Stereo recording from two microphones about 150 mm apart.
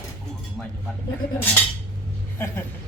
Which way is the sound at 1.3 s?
15° left (ahead or behind).